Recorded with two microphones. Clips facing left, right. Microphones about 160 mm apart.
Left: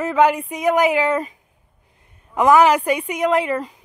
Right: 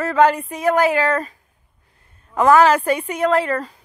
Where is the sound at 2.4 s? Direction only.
15° left (ahead or behind).